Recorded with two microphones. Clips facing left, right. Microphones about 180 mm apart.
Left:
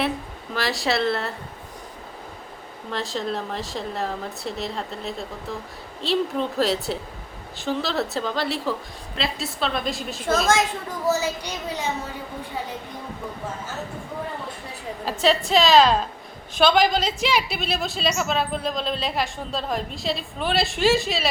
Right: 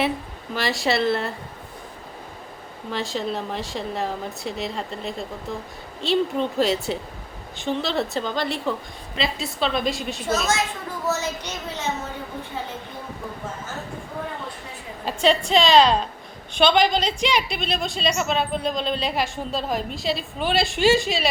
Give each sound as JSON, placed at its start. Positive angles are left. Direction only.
{"t": 0.5, "sound": "a woman's voice", "side_deg": 0}
{"t": 2.9, "sound": "a woman's voice", "side_deg": 0}
{"t": 10.2, "sound": "a woman's voice", "side_deg": 55}
{"t": 11.1, "sound": "a child's voice", "side_deg": 10}
{"t": 15.0, "sound": "a woman's voice", "side_deg": 0}